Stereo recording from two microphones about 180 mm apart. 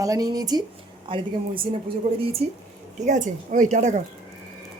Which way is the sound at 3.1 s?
45° right (ahead or behind).